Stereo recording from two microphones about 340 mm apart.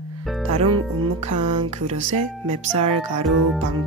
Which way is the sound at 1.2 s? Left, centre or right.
Right.